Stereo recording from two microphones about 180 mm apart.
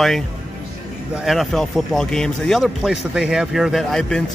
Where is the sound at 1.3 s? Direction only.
Centre (ahead or behind).